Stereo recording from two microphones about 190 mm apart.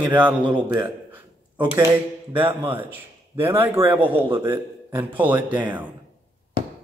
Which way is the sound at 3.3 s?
10° right (ahead or behind).